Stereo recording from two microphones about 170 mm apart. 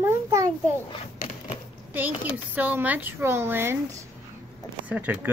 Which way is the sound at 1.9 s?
10° right (ahead or behind).